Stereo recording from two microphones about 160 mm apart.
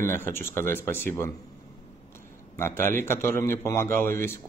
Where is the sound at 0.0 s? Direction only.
15° left (ahead or behind).